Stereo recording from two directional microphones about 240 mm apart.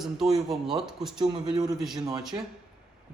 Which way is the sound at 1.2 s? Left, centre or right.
Centre.